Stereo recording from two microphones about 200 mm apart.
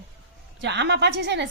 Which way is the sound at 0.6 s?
60° right (ahead or behind).